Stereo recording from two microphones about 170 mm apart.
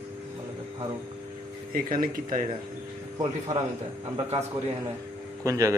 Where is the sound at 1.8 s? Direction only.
55° right (ahead or behind).